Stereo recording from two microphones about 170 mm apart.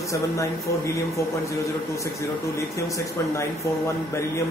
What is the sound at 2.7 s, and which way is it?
Speech, 15° left (ahead or behind).